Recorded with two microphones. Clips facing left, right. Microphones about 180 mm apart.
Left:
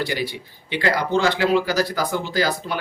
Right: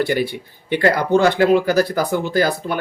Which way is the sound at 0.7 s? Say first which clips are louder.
Right 5 dB; 50° right (ahead or behind).